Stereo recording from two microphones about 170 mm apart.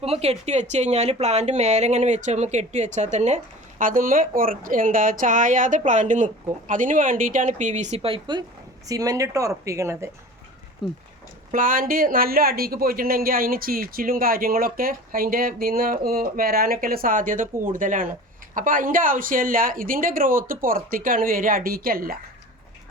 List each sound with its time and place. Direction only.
0.0 s speech: 35° right (ahead or behind); by 10.1 s 15° right (ahead or behind)
10.8 s speech: centre (ahead or behind)
11.5 s speech: 55° right (ahead or behind)